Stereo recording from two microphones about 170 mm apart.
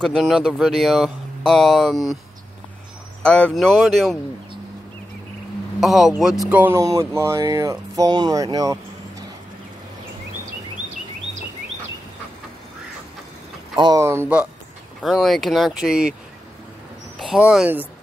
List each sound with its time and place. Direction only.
0.0 s speech: centre (ahead or behind)
3.2 s speech: 5° left (ahead or behind)
5.8 s speech: centre (ahead or behind)
6.5 s speech: 15° right (ahead or behind)
13.7 s speech: 20° right (ahead or behind); by 16.2 s 5° right (ahead or behind)
17.2 s speech: 5° right (ahead or behind)